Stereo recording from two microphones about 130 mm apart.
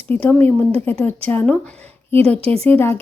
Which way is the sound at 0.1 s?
15° left (ahead or behind).